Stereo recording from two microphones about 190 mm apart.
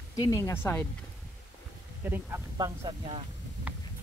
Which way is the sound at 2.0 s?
10° right (ahead or behind).